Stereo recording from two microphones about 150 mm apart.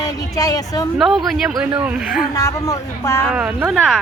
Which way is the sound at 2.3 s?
20° left (ahead or behind).